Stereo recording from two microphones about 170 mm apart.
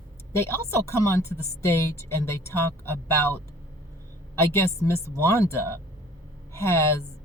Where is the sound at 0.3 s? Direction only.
15° left (ahead or behind).